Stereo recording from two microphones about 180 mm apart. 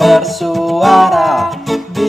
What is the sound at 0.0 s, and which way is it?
Music, centre (ahead or behind).